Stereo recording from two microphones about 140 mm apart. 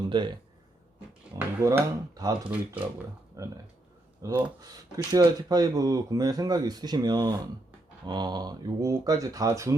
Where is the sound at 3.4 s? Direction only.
25° right (ahead or behind).